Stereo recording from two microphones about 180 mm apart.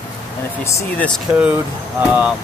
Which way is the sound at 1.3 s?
10° right (ahead or behind).